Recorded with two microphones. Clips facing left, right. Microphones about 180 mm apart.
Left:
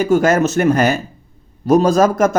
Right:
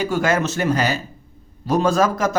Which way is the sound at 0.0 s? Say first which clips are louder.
Left 6 dB; 45° left (ahead or behind).